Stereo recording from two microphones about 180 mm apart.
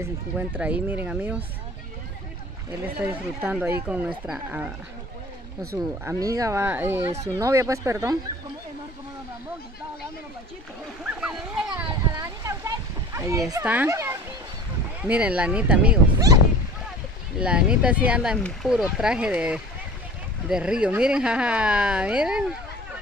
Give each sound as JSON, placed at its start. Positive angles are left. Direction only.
{"t": 0.0, "sound": "speech", "side_deg": -10}
{"t": 3.0, "sound": "speech", "side_deg": -10}
{"t": 6.0, "sound": "speech", "side_deg": -20}
{"t": 11.1, "sound": "a sound", "side_deg": -5}
{"t": 12.2, "sound": "a sound", "side_deg": -15}
{"t": 13.5, "sound": "speech", "side_deg": -15}
{"t": 17.4, "sound": "speech", "side_deg": -5}